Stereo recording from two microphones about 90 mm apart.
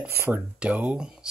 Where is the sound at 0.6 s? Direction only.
15° right (ahead or behind).